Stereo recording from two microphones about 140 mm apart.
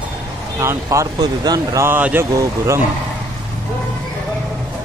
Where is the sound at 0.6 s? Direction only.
20° right (ahead or behind).